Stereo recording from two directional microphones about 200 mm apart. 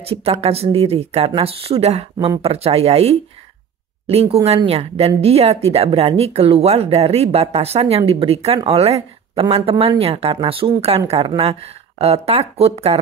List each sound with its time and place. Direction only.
0.1 s speech: 30° right (ahead or behind)